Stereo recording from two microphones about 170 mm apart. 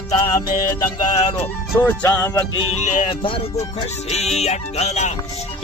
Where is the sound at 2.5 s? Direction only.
40° left (ahead or behind).